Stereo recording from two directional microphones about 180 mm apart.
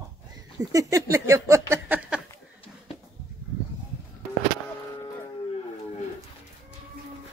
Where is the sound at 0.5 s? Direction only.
15° right (ahead or behind).